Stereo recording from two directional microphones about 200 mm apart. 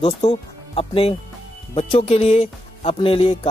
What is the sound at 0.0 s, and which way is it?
Speech, 25° left (ahead or behind).